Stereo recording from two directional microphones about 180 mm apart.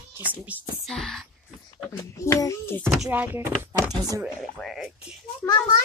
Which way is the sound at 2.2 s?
15° left (ahead or behind).